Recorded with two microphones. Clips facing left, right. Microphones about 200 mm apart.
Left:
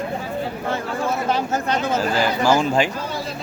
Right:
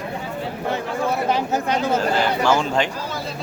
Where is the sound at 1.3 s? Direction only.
15° right (ahead or behind).